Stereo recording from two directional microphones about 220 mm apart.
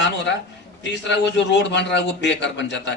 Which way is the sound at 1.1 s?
50° left (ahead or behind).